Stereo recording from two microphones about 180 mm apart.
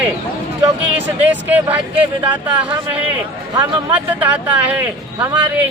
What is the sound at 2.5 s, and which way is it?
Speech, 25° right (ahead or behind).